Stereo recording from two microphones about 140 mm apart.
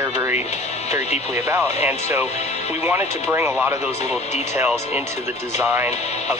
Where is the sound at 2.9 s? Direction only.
15° right (ahead or behind).